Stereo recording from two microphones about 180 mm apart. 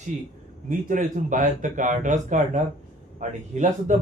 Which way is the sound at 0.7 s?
45° right (ahead or behind).